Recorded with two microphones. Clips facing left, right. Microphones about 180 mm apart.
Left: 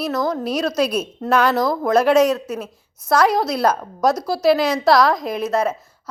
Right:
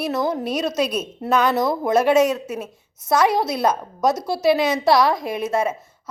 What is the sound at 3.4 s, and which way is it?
A woman's voice, centre (ahead or behind).